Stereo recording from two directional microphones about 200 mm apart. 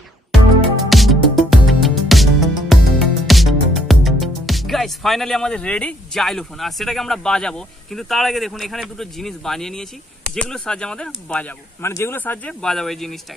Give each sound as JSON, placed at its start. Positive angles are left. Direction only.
{"t": 0.9, "sound": "music", "side_deg": 0}
{"t": 10.3, "sound": "speech", "side_deg": 5}